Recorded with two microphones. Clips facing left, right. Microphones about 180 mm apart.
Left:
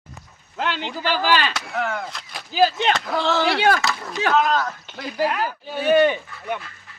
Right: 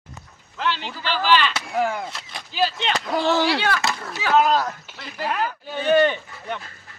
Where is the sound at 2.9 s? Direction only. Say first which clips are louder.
Right 1 dB; 15° right (ahead or behind).